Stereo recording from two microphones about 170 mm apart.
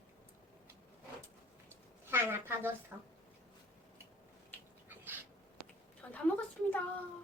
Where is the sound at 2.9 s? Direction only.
15° right (ahead or behind).